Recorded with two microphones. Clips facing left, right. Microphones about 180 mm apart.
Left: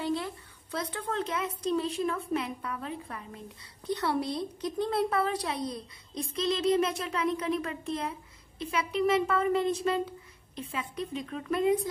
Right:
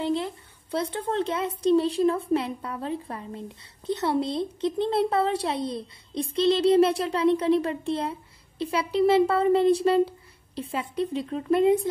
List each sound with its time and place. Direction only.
0.0 s a woman's voice: 25° right (ahead or behind)